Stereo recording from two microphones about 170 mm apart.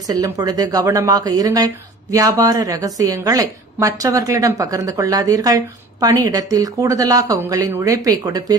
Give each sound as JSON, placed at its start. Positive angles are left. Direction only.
{"t": 0.1, "sound": "speech", "side_deg": -20}